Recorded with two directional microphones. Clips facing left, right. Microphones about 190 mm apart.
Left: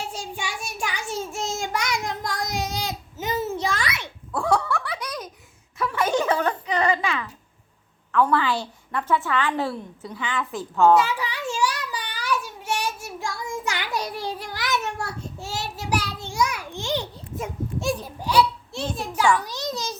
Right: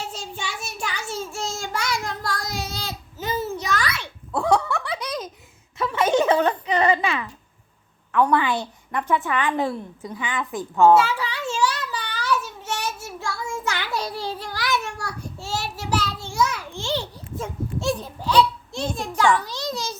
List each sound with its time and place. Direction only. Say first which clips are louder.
0.0 s child singing: left 1 dB; 10° left (ahead or behind)
4.3 s giggle: right 2 dB; 20° right (ahead or behind)
5.7 s a sound: right 3 dB; 20° right (ahead or behind)
8.1 s a woman's voice: right 1 dB; 15° right (ahead or behind)
10.9 s child singing: right 2 dB; 15° left (ahead or behind)
18.9 s a child's voice: right 1 dB; 5° left (ahead or behind)
19.4 s a child's voice: right 1 dB; 20° left (ahead or behind)